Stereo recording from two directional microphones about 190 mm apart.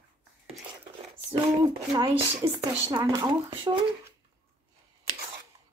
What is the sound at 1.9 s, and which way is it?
Speech, 20° right (ahead or behind).